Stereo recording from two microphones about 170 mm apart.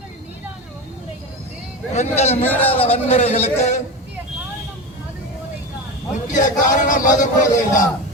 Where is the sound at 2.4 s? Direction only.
10° left (ahead or behind).